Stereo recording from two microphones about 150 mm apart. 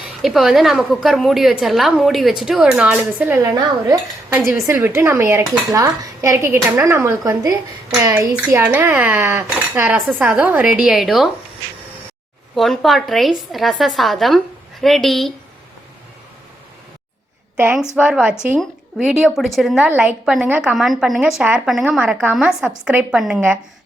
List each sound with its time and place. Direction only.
0.2 s a woman's voice: centre (ahead or behind)
3.5 s speech: 25° right (ahead or behind); by 11.3 s centre (ahead or behind)
12.5 s a woman's voice: centre (ahead or behind)
17.6 s a woman's voice: 15° right (ahead or behind)